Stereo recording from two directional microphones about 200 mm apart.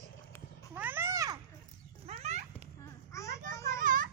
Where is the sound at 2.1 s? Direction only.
35° right (ahead or behind).